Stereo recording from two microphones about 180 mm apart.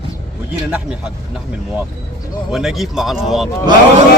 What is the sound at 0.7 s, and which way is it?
Speech, 5° right (ahead or behind).